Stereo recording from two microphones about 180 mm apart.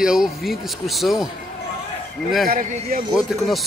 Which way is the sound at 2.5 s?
55° right (ahead or behind).